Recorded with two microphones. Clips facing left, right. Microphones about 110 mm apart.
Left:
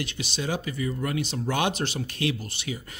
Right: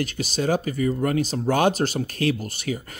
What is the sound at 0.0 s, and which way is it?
Speech, 45° right (ahead or behind).